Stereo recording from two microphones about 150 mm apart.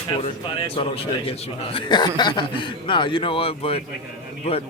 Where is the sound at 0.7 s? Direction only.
40° left (ahead or behind).